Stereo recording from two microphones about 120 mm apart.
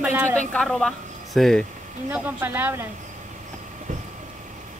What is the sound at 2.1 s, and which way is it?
Speech, 15° right (ahead or behind).